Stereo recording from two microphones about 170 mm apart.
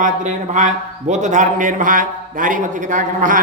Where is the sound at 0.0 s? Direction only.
45° right (ahead or behind).